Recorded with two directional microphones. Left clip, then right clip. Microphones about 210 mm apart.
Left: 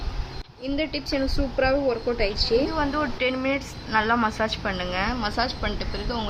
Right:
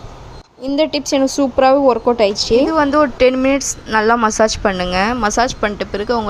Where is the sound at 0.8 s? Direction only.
35° right (ahead or behind).